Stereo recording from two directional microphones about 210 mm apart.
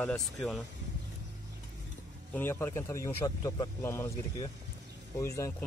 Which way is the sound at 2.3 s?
10° left (ahead or behind).